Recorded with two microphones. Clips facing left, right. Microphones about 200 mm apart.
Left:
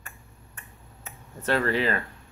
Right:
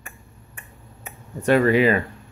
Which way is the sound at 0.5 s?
15° right (ahead or behind).